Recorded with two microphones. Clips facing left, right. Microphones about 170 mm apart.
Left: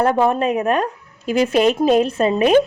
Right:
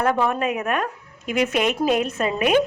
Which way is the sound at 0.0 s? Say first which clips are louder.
Left 5 dB; 30° left (ahead or behind).